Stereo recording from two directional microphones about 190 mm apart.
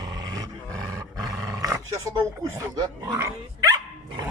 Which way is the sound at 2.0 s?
15° right (ahead or behind).